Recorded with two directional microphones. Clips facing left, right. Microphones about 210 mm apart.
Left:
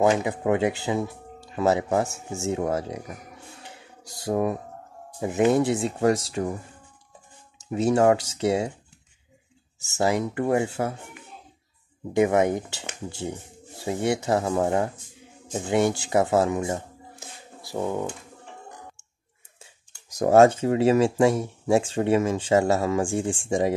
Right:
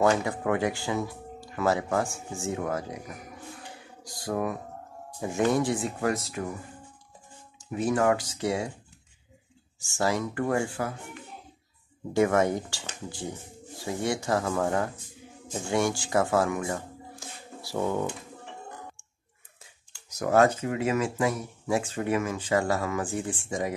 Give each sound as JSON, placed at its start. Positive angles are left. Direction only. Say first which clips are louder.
{"t": 0.0, "sound": "speech", "louder": "left 3 dB", "side_deg": 20}
{"t": 3.5, "sound": "a sound", "louder": "right 1 dB", "side_deg": 25}
{"t": 5.2, "sound": "speech", "louder": "left 4 dB", "side_deg": 20}
{"t": 7.7, "sound": "speech", "louder": "left 5 dB", "side_deg": 25}
{"t": 9.8, "sound": "speech", "louder": "left 4 dB", "side_deg": 20}
{"t": 12.1, "sound": "speech", "louder": "left 3 dB", "side_deg": 20}
{"t": 20.2, "sound": "speech", "louder": "left 6 dB", "side_deg": 25}